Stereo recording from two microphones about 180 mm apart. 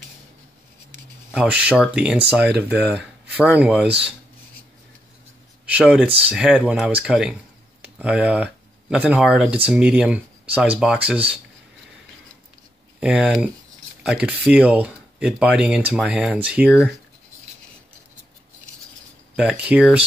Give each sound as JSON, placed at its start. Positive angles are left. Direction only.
{"t": 1.3, "sound": "speech", "side_deg": -5}
{"t": 3.8, "sound": "speech", "side_deg": -65}
{"t": 5.7, "sound": "speech", "side_deg": -5}
{"t": 13.0, "sound": "speech", "side_deg": -5}
{"t": 19.3, "sound": "speech", "side_deg": -5}